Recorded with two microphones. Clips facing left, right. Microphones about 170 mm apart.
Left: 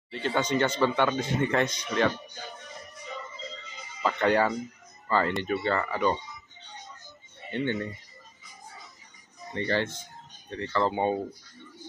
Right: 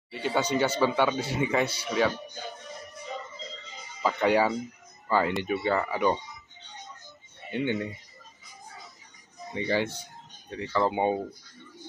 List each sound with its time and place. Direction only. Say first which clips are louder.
0.1 s a man's voice: even; 10° right (ahead or behind)
4.0 s a man's voice: right 1 dB; 10° right (ahead or behind)
7.5 s a man's voice: right 1 dB; 10° right (ahead or behind)
9.5 s a man's voice: right 1 dB; 10° right (ahead or behind)